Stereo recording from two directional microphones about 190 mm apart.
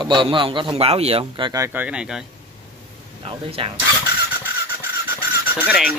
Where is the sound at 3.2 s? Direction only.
30° right (ahead or behind).